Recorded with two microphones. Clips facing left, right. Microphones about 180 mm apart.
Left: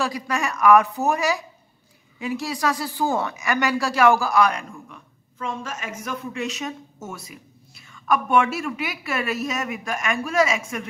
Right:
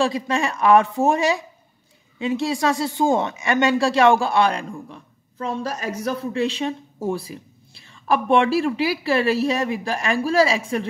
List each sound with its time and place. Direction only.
0.0 s a woman's voice: 25° right (ahead or behind)